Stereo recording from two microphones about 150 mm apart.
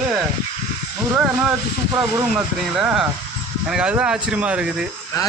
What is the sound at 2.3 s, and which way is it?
Speech, 5° right (ahead or behind).